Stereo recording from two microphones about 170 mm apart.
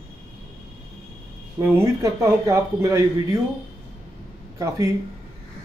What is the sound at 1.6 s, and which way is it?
Speech, 15° right (ahead or behind).